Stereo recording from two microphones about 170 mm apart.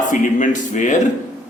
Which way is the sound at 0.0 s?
50° left (ahead or behind).